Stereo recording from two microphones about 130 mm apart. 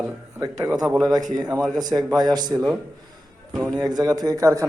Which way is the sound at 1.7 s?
30° right (ahead or behind).